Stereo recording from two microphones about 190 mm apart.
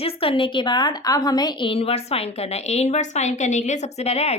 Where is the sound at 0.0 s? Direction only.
30° left (ahead or behind).